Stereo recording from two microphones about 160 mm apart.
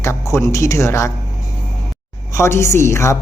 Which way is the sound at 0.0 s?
20° left (ahead or behind).